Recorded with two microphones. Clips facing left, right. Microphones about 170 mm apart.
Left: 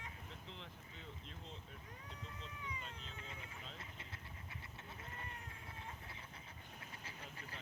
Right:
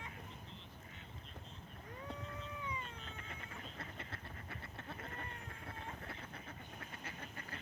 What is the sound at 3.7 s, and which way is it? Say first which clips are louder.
Quack: right 5 dB; 60° right (ahead or behind).